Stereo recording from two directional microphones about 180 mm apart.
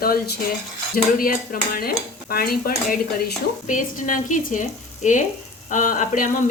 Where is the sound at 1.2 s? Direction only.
50° left (ahead or behind).